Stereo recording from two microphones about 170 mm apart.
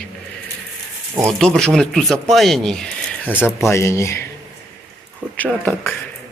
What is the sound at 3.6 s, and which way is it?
Speech, 15° left (ahead or behind).